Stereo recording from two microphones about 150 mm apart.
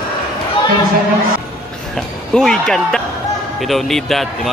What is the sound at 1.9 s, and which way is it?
Music, 5° left (ahead or behind).